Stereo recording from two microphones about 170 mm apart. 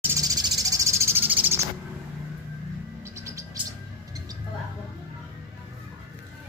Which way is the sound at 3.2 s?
15° right (ahead or behind).